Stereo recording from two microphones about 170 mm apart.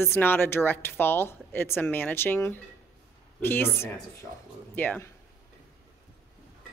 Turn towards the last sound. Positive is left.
turn(degrees=10)  # may be behind; listen again after turning